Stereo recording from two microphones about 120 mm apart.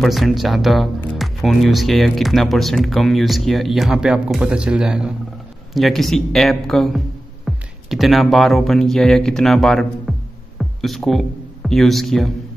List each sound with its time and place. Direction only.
0.0 s speech: centre (ahead or behind)